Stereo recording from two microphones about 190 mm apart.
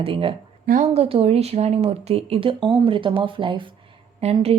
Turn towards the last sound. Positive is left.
turn(degrees=-30)  # may be behind; listen again after turning